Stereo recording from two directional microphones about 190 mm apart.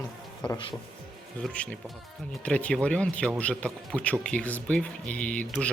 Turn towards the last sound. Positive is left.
turn(degrees=5)  # may be behind; listen again after turning